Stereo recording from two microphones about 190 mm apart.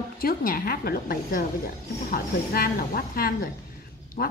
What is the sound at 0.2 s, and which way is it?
A woman's voice, 50° left (ahead or behind).